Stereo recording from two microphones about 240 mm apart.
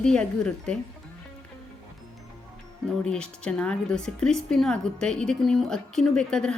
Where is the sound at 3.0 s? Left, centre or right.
Centre.